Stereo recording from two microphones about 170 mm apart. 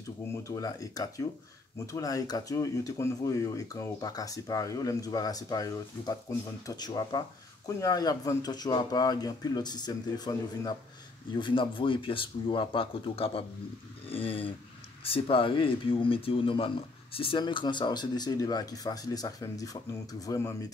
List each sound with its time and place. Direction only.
0.4 s speech: 20° left (ahead or behind)